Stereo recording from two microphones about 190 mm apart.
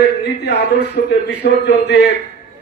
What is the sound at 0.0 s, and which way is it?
A man's voice, 60° left (ahead or behind).